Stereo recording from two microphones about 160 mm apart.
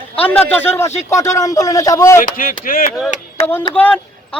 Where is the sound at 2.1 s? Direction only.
60° left (ahead or behind).